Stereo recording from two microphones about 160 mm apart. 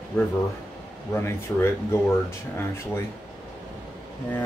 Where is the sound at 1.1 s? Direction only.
15° left (ahead or behind).